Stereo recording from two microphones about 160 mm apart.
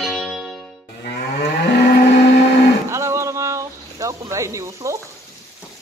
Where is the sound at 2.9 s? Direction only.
15° right (ahead or behind).